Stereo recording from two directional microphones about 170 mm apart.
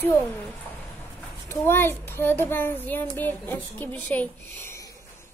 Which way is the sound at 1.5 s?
15° left (ahead or behind).